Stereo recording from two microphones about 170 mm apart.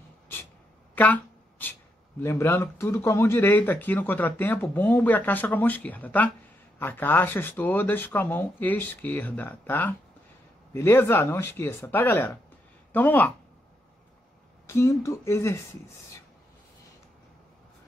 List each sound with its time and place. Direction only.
0.9 s a sound: 10° left (ahead or behind)
2.1 s speech: 15° left (ahead or behind)
14.7 s speech: 15° left (ahead or behind)